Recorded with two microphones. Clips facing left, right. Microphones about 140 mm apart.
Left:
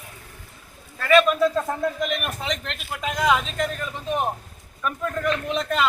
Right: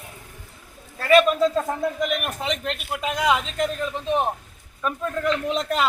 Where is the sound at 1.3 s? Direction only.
20° right (ahead or behind).